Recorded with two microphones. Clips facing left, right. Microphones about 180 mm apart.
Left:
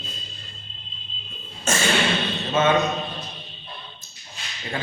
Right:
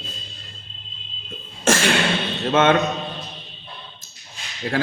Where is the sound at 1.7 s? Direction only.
90° right.